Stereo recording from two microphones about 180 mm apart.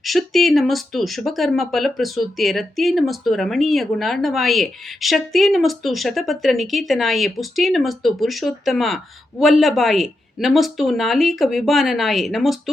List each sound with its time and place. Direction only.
0.0 s speech: centre (ahead or behind)